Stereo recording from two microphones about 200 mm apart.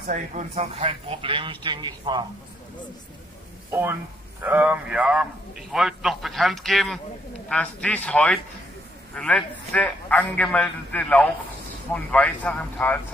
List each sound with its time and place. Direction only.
0.0 s speech: 40° right (ahead or behind); by 2.2 s 20° right (ahead or behind)
4.4 s a man's voice: 5° right (ahead or behind)